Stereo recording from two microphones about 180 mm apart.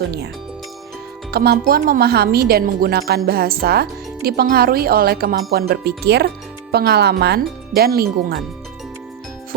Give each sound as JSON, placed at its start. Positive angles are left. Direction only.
{"t": 1.3, "sound": "speech", "side_deg": -55}